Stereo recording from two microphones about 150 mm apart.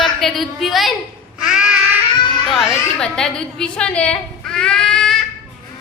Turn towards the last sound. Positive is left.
turn(degrees=5)  # may be behind; listen again after turning